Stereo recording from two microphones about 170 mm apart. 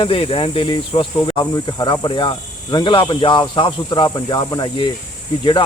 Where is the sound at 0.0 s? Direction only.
30° left (ahead or behind).